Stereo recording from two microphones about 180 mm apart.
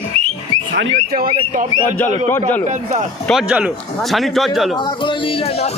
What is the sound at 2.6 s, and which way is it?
Speech, 40° right (ahead or behind).